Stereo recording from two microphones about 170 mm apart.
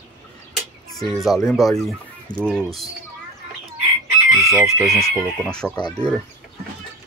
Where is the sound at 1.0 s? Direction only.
Centre (ahead or behind).